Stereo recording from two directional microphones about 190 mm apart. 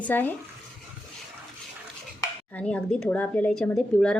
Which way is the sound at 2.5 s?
10° left (ahead or behind).